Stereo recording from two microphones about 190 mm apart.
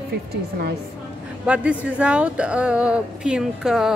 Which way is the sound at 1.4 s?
5° right (ahead or behind).